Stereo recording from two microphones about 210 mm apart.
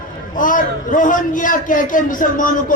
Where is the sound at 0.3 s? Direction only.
40° left (ahead or behind).